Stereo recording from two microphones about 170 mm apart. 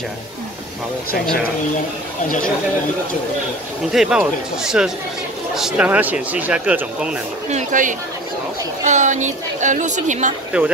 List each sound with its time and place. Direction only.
3.9 s speech: 5° right (ahead or behind)
7.4 s a woman's voice: 45° right (ahead or behind)
10.5 s speech: 5° right (ahead or behind)